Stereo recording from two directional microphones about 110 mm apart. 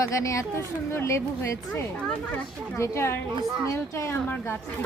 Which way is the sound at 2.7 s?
25° left (ahead or behind).